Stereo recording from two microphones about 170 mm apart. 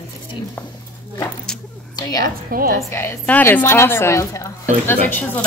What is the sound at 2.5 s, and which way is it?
Speech, 55° right (ahead or behind).